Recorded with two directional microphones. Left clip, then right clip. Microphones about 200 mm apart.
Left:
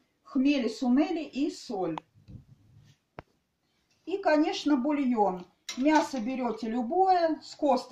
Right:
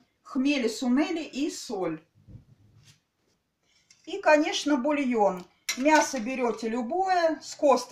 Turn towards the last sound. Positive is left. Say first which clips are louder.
# right 4 dB
turn(degrees=-25)  # may be behind; listen again after turning